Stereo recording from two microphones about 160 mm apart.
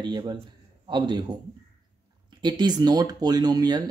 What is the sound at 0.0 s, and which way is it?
Speech, 25° right (ahead or behind).